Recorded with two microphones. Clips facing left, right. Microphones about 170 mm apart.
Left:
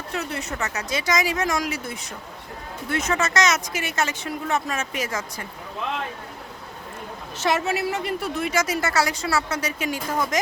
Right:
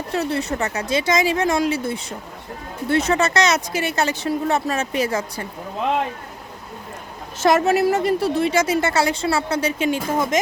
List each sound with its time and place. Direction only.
0.1 s a woman's voice: 35° right (ahead or behind)
7.4 s a woman's voice: 45° right (ahead or behind); by 10.3 s 25° right (ahead or behind)